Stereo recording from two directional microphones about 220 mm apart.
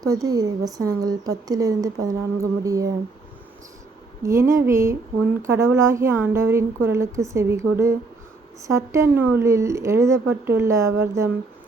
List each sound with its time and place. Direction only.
0.0 s a woman's voice: 15° right (ahead or behind)
4.2 s a woman's voice: 15° right (ahead or behind)